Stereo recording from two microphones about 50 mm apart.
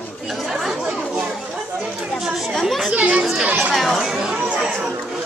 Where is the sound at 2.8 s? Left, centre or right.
Right.